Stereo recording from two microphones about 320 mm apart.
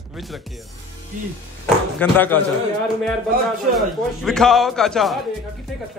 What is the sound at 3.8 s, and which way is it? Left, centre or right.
A man's voice, centre.